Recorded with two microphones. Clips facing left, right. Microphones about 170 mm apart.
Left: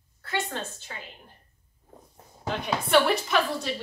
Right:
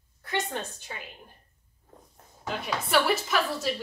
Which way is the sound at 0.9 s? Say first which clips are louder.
Right 1 dB; 15° right (ahead or behind).